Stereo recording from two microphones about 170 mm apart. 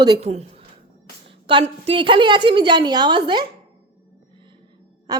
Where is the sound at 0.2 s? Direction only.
40° right (ahead or behind).